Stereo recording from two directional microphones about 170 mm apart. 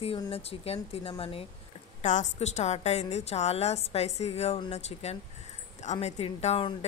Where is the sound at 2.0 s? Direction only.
45° left (ahead or behind).